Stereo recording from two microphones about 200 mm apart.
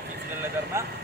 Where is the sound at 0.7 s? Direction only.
15° right (ahead or behind).